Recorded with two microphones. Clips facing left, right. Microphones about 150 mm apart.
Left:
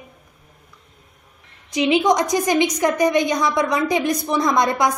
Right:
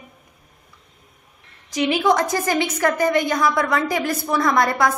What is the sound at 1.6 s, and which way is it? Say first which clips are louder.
A woman's voice: left 2 dB; 20° left (ahead or behind).